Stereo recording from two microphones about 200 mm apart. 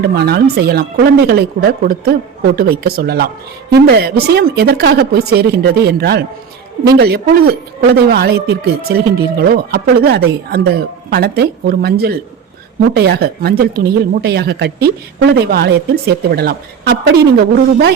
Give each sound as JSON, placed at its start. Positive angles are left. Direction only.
{"t": 0.1, "sound": "speech", "side_deg": -55}